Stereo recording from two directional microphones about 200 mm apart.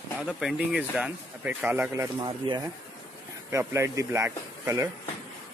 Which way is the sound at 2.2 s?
20° right (ahead or behind).